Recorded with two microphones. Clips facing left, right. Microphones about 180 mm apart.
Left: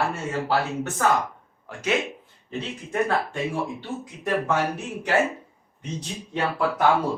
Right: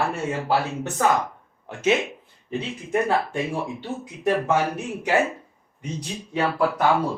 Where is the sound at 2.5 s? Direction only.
10° right (ahead or behind).